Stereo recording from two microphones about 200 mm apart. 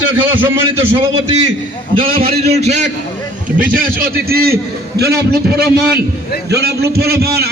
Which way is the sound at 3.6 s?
45° right (ahead or behind).